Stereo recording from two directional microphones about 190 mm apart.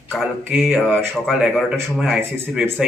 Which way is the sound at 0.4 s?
Centre (ahead or behind).